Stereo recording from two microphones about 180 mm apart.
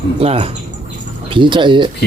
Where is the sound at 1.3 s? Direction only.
25° right (ahead or behind).